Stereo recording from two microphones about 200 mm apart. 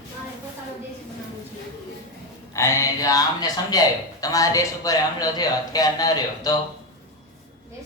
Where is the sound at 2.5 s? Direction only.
15° left (ahead or behind).